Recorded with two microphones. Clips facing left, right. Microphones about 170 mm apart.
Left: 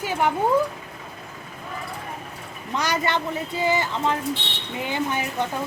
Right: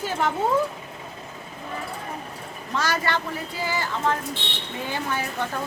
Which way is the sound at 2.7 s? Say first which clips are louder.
Left 1 dB; 20° left (ahead or behind).